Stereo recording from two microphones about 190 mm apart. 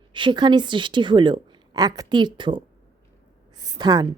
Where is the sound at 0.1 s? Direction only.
25° right (ahead or behind).